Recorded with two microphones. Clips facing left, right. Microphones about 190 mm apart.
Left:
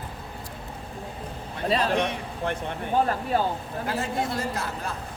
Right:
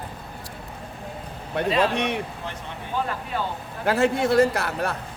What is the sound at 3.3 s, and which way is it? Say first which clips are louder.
Speech: left 4 dB; 40° left (ahead or behind).